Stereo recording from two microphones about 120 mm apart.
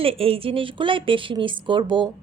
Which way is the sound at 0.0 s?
55° right (ahead or behind).